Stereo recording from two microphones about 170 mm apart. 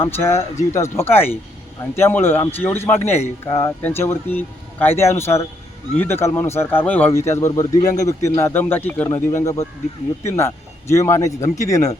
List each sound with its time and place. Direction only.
0.0 s speech: 15° left (ahead or behind)